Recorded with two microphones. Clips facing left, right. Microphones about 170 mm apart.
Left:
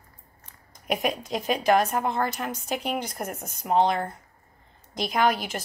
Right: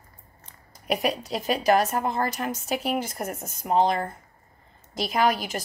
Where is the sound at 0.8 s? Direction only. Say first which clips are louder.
Right 1 dB; centre (ahead or behind).